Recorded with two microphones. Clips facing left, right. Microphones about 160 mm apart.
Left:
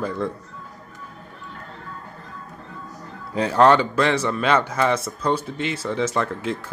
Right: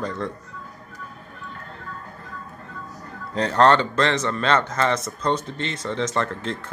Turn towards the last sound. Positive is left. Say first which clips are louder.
# left 2 dB
turn(degrees=10)  # may be behind; listen again after turning